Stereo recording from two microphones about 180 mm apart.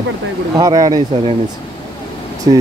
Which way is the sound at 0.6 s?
20° right (ahead or behind).